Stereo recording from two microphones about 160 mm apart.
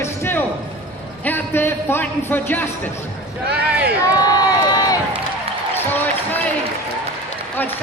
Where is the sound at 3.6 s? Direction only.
10° right (ahead or behind).